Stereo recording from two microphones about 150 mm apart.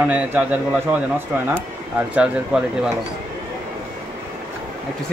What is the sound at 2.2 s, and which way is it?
Speech, 5° right (ahead or behind).